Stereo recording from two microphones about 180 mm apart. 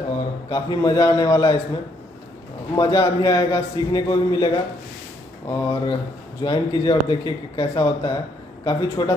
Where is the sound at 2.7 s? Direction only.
20° left (ahead or behind).